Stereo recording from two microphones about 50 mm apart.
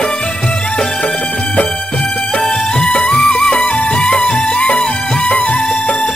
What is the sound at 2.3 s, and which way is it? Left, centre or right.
Music, left.